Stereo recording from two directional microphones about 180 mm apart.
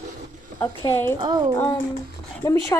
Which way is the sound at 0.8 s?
15° left (ahead or behind).